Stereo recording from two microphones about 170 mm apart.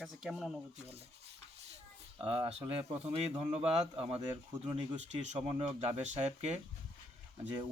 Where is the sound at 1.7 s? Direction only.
30° right (ahead or behind).